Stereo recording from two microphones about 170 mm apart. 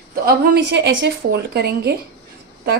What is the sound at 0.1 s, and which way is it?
A woman's voice, 60° right (ahead or behind).